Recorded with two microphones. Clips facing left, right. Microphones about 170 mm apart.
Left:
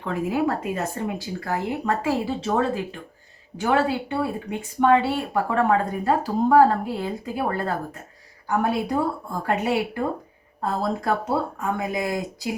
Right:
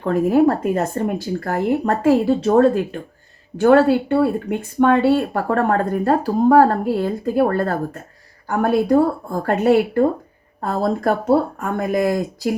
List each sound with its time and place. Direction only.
0.0 s speech: 50° right (ahead or behind)